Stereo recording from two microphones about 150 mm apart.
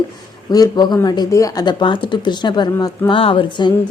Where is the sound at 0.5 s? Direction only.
25° left (ahead or behind).